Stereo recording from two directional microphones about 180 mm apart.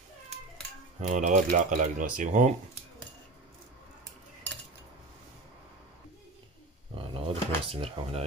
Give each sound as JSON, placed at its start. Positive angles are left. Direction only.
{"t": 1.0, "sound": "speech", "side_deg": -40}
{"t": 7.0, "sound": "drawer open or close", "side_deg": -30}